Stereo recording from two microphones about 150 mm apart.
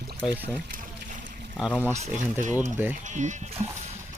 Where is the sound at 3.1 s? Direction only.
55° right (ahead or behind).